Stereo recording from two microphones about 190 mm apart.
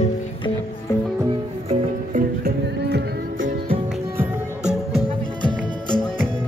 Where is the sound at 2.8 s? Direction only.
60° right (ahead or behind).